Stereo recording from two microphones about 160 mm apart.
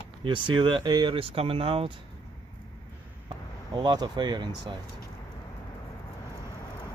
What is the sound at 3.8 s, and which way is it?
Speech, 25° right (ahead or behind).